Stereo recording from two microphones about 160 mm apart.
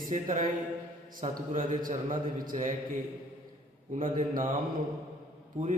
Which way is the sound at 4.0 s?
55° right (ahead or behind).